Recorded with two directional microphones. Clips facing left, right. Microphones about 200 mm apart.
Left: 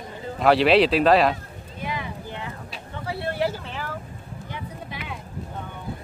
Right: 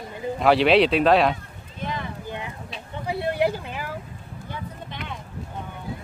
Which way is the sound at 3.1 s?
15° right (ahead or behind).